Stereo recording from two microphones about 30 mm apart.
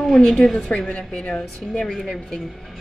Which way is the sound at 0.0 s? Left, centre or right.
Centre.